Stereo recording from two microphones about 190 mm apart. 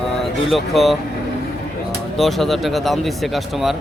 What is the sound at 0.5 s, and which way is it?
Speech, centre (ahead or behind).